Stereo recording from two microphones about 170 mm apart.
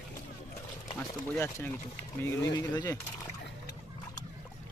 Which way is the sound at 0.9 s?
15° left (ahead or behind).